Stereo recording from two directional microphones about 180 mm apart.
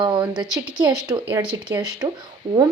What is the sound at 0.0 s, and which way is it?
Speech, 20° right (ahead or behind).